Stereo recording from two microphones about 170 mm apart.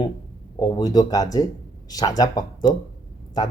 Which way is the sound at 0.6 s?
20° left (ahead or behind).